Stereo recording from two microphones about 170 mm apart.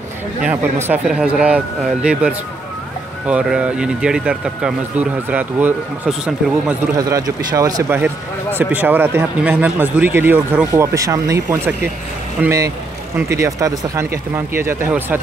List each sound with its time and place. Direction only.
0.4 s speech: 10° right (ahead or behind)
7.0 s speech: 20° right (ahead or behind)